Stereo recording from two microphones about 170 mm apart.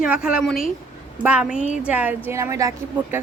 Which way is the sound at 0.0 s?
5° right (ahead or behind).